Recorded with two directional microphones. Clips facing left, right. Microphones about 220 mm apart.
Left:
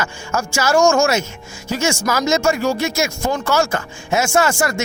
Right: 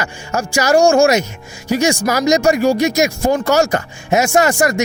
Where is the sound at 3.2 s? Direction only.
40° right (ahead or behind).